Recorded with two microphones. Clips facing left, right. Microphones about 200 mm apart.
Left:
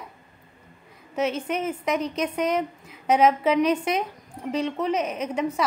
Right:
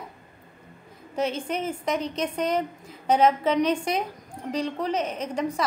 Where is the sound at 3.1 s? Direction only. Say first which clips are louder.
Left 1 dB; 10° left (ahead or behind).